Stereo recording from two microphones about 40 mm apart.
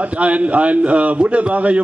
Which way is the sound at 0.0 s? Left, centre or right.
Right.